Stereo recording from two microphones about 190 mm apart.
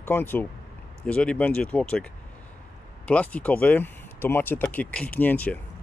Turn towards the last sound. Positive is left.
turn(degrees=10)  # may be behind; listen again after turning